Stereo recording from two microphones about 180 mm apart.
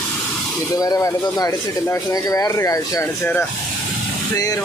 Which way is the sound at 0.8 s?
20° left (ahead or behind).